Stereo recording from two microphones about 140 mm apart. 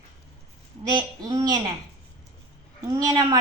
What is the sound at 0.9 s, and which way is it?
Speech, 30° right (ahead or behind).